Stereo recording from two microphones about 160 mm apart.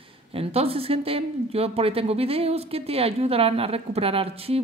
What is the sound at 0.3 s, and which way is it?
A woman's voice, 40° right (ahead or behind).